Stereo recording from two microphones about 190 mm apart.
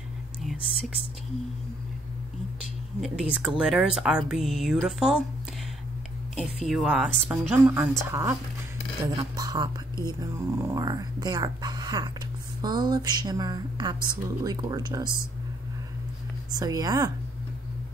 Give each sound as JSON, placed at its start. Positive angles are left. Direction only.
{"t": 0.4, "sound": "speech", "side_deg": 0}
{"t": 3.0, "sound": "speech", "side_deg": -5}
{"t": 6.3, "sound": "a woman's voice", "side_deg": 0}
{"t": 9.4, "sound": "speech", "side_deg": -20}
{"t": 16.5, "sound": "speech", "side_deg": -20}